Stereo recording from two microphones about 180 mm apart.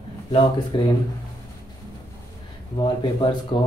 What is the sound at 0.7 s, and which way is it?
Speech, 25° left (ahead or behind).